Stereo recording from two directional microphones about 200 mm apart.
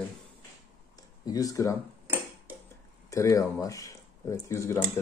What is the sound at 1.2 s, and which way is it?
Speech, 15° left (ahead or behind).